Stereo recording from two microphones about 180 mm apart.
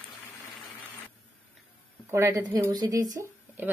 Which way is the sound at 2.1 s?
15° right (ahead or behind).